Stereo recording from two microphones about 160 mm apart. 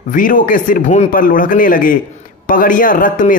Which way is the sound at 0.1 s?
55° left (ahead or behind).